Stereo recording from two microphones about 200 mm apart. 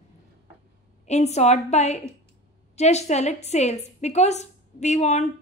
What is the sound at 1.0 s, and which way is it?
A woman's voice, 35° left (ahead or behind).